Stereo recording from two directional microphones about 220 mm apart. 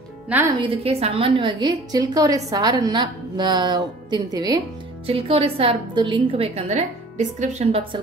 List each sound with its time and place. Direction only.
0.3 s a woman's voice: 10° right (ahead or behind)
0.6 s a woman's voice: 25° right (ahead or behind)